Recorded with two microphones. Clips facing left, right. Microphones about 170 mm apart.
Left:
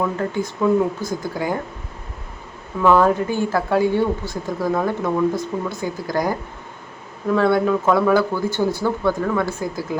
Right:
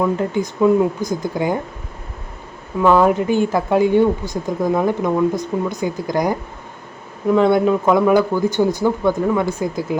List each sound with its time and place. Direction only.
0.0 s speech: 15° right (ahead or behind)
2.8 s speech: 15° right (ahead or behind)